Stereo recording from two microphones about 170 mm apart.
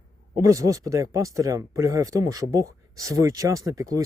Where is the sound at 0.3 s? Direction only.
20° right (ahead or behind).